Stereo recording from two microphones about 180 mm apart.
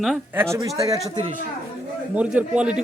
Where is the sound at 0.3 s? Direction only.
15° right (ahead or behind).